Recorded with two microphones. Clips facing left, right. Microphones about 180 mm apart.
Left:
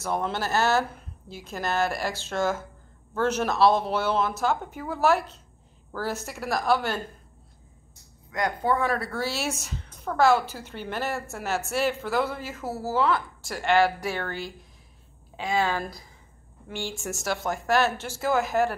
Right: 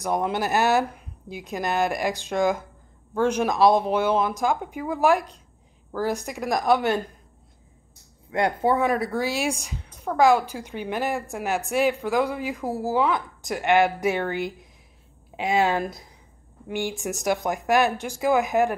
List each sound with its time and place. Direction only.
0.0 s speech: 15° right (ahead or behind)
8.3 s speech: 30° right (ahead or behind)
9.7 s a sound: 5° right (ahead or behind)
10.1 s speech: 15° right (ahead or behind)